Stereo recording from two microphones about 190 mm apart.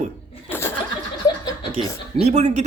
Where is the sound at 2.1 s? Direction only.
35° right (ahead or behind).